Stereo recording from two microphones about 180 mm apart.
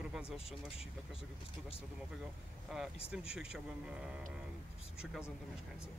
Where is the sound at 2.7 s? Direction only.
Centre (ahead or behind).